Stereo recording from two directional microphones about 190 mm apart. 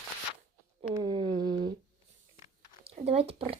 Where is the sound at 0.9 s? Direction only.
25° right (ahead or behind).